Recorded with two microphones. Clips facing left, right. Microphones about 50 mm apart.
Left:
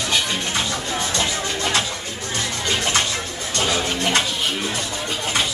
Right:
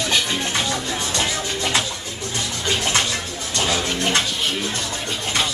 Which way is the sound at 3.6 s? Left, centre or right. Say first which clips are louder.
Even; centre.